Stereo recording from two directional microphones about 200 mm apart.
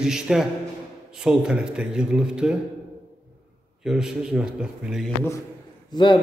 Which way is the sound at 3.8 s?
5° right (ahead or behind).